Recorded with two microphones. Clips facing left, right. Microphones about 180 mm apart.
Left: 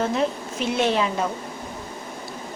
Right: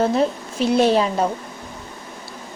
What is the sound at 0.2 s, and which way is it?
Speech, 35° right (ahead or behind).